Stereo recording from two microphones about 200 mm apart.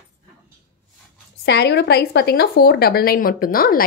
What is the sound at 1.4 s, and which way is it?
A woman's voice, 60° left (ahead or behind).